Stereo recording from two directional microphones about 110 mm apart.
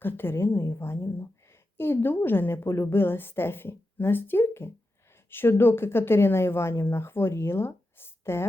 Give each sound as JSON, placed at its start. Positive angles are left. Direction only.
{"t": 0.0, "sound": "speech", "side_deg": 20}